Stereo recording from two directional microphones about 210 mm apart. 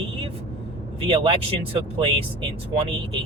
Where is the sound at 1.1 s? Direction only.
25° right (ahead or behind).